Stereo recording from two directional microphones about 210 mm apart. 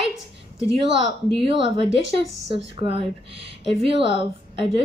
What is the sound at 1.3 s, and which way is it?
Speech, 25° right (ahead or behind).